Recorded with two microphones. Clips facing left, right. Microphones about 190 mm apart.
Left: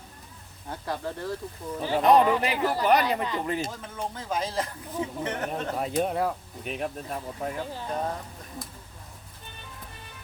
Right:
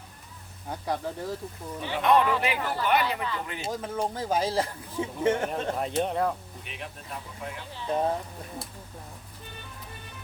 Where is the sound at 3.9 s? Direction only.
30° right (ahead or behind).